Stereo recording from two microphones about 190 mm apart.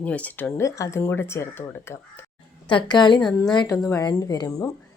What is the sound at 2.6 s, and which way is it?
Speech, 25° left (ahead or behind).